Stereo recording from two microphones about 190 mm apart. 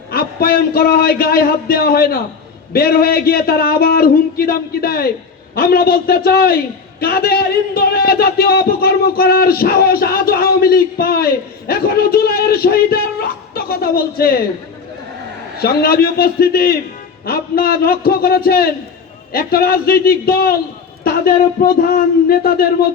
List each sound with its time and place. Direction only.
0.1 s music: 55° left (ahead or behind)
15.5 s music: 55° left (ahead or behind)